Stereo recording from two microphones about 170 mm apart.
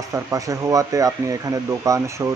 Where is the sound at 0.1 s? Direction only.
20° right (ahead or behind).